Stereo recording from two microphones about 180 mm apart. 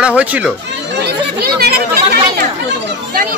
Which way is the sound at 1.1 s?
60° right (ahead or behind).